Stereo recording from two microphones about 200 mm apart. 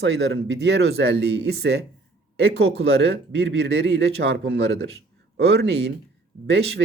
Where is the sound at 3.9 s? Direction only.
60° right (ahead or behind).